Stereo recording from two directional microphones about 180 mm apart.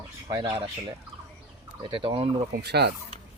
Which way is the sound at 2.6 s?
65° right (ahead or behind).